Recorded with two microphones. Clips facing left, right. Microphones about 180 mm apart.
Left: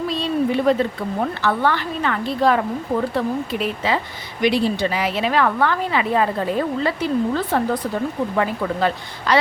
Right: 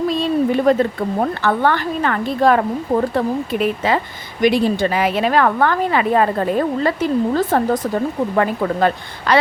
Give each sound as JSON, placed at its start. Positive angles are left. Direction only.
{"t": 0.1, "sound": "a woman's voice", "side_deg": -50}